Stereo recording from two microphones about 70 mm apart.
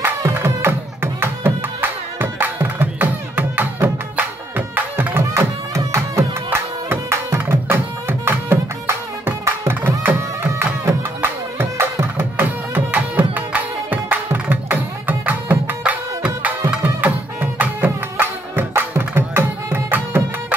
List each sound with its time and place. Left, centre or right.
0.3 s music: right
5.3 s music: right